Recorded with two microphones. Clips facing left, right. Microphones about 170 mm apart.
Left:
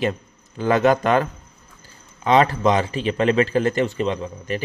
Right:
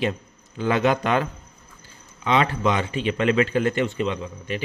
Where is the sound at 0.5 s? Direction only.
45° left (ahead or behind).